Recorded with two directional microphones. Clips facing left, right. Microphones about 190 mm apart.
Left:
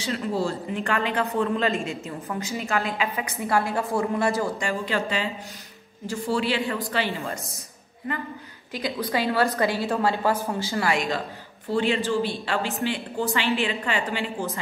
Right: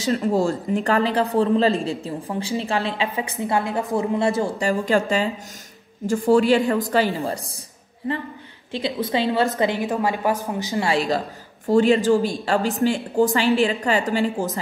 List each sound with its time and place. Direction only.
0.1 s a man's voice: 45° right (ahead or behind); by 4.6 s 25° right (ahead or behind)
4.6 s a woman's voice: 40° right (ahead or behind)
8.7 s a woman's voice: 25° right (ahead or behind)
10.9 s a man's voice: 35° right (ahead or behind)